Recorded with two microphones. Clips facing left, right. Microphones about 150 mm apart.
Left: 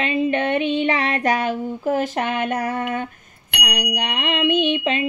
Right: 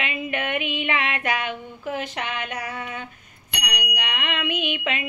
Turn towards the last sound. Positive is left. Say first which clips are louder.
# left 7 dB
turn(degrees=30)  # may be behind; listen again after turning